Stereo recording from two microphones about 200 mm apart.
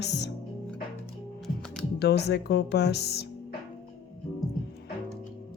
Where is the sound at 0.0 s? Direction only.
60° left (ahead or behind).